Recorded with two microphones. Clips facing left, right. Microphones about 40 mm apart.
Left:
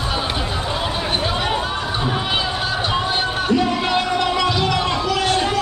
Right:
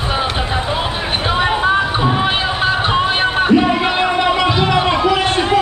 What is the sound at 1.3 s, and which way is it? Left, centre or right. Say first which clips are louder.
Chatter: right 7 dB; right.